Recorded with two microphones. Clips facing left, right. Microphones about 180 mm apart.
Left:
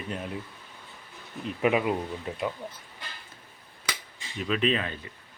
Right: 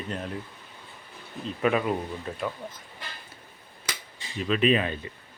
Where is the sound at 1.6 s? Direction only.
15° left (ahead or behind).